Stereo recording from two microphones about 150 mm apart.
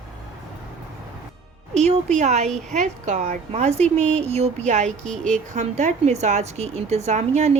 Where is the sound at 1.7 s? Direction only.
50° right (ahead or behind).